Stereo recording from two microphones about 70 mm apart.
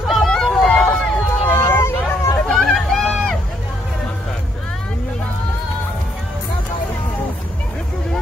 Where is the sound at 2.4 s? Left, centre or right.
Centre.